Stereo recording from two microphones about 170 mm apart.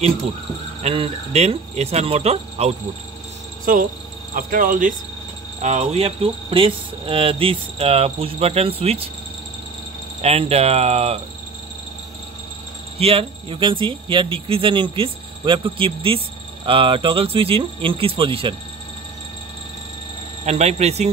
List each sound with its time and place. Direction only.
0.8 s speech: 35° right (ahead or behind)
3.7 s speech: 55° right (ahead or behind); by 9.1 s 35° right (ahead or behind)
10.2 s speech: 35° right (ahead or behind)
13.0 s speech: 30° right (ahead or behind)
20.4 s speech: 40° right (ahead or behind)